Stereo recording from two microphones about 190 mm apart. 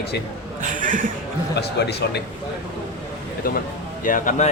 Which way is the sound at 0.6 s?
40° right (ahead or behind).